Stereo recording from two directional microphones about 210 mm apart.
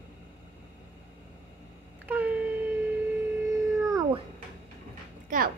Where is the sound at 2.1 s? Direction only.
10° right (ahead or behind).